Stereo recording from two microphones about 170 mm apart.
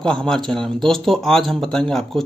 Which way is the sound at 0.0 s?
5° left (ahead or behind).